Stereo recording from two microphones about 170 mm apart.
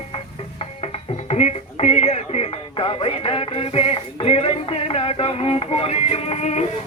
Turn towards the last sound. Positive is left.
turn(degrees=40)  # may be behind; listen again after turning